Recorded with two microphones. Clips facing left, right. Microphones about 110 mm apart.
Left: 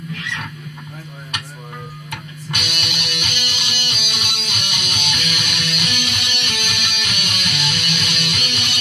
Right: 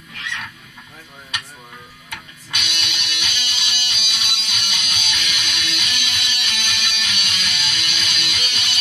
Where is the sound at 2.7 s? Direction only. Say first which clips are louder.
Left 3 dB; 50° left (ahead or behind).